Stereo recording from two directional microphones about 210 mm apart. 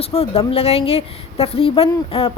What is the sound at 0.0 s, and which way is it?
A woman's voice, 30° left (ahead or behind).